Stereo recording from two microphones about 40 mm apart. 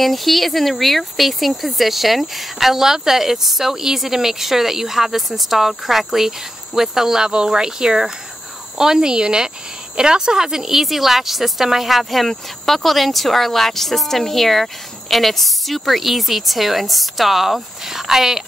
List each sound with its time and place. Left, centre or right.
0.0 s speech: centre